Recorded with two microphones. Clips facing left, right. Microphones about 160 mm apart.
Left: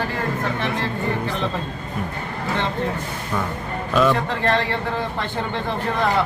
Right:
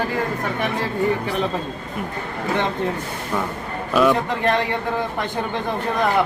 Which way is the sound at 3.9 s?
10° right (ahead or behind).